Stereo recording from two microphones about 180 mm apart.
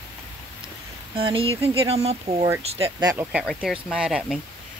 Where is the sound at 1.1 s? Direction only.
30° right (ahead or behind).